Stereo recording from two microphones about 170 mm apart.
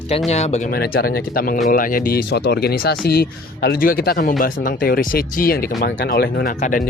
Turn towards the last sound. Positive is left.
turn(degrees=45)  # may be behind; listen again after turning